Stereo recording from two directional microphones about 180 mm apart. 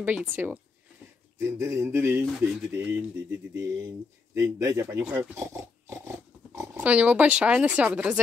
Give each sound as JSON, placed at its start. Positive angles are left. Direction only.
{"t": 0.0, "sound": "speech", "side_deg": -10}
{"t": 1.4, "sound": "speech", "side_deg": -15}
{"t": 5.4, "sound": "speech", "side_deg": -15}